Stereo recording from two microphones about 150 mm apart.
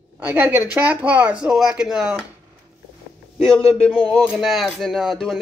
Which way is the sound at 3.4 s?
5° left (ahead or behind).